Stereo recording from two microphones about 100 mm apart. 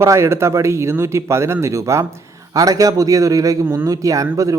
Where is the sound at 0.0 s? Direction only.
25° right (ahead or behind).